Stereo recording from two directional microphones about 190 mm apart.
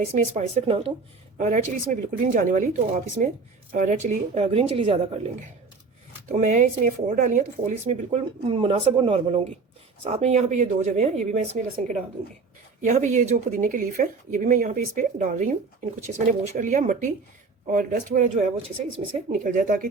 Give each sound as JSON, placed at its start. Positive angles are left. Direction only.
{"t": 0.0, "sound": "speech", "side_deg": -35}
{"t": 6.3, "sound": "speech", "side_deg": -40}
{"t": 16.6, "sound": "speech", "side_deg": -40}